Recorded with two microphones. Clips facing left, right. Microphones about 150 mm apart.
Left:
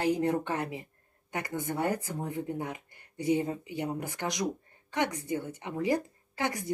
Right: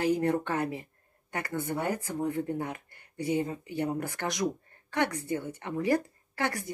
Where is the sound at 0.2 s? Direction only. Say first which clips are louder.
Right 1 dB; 15° left (ahead or behind).